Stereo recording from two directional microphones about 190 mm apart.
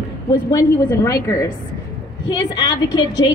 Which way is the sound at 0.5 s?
15° left (ahead or behind).